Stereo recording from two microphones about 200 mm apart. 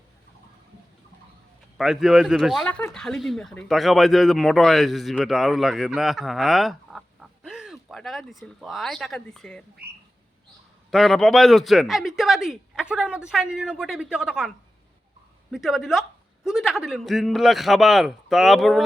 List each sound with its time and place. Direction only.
1.8 s speech: centre (ahead or behind)
10.9 s speech: centre (ahead or behind)